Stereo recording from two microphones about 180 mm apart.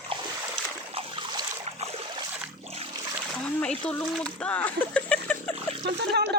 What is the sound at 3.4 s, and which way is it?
Speech, 5° left (ahead or behind).